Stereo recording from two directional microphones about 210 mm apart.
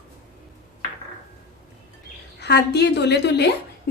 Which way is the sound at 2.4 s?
50° left (ahead or behind).